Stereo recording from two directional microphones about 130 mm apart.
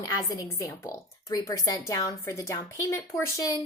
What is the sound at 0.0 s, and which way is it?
A woman's voice, 30° left (ahead or behind).